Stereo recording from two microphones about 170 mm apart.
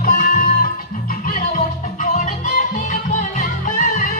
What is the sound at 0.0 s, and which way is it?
Music, 55° left (ahead or behind).